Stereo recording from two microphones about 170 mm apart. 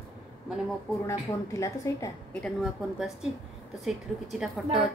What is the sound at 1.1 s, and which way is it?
A woman's voice, 20° left (ahead or behind).